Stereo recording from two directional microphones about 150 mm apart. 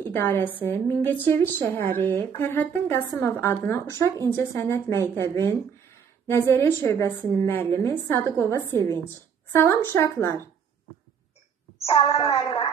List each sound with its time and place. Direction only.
0.0 s a sound: 15° left (ahead or behind)
0.6 s a woman's voice: 15° left (ahead or behind)
12.1 s speech: 40° left (ahead or behind)